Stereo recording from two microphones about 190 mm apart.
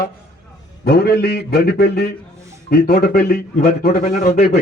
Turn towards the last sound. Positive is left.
turn(degrees=50)  # may be behind; listen again after turning